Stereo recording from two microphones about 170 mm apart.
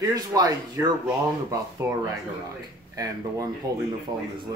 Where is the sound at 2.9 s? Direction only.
20° right (ahead or behind).